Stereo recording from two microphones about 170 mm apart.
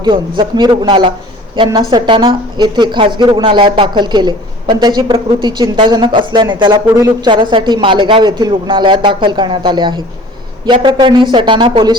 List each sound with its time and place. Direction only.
0.0 s a woman's voice: 25° right (ahead or behind)